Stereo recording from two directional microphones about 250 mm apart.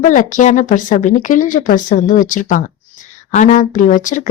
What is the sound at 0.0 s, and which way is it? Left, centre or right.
Speech, left.